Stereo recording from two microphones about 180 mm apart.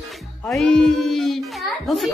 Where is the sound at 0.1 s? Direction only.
Centre (ahead or behind).